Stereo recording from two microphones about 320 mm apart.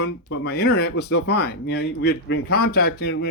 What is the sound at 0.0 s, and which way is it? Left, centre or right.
Speech, left.